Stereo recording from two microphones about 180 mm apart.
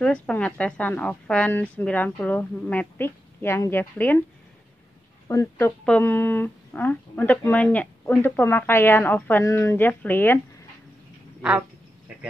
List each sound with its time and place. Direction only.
0.0 s a woman's voice: 5° left (ahead or behind)
5.3 s a woman's voice: 20° left (ahead or behind)